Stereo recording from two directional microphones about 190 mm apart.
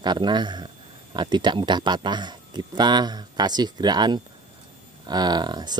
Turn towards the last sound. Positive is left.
turn(degrees=-20)  # may be behind; listen again after turning